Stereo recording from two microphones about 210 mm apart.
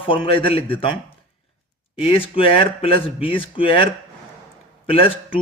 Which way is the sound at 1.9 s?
25° left (ahead or behind).